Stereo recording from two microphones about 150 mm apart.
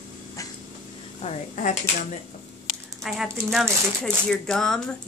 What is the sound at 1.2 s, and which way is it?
Speech, 50° left (ahead or behind).